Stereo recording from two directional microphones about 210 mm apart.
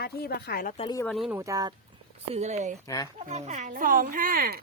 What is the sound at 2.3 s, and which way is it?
Speech, 35° right (ahead or behind).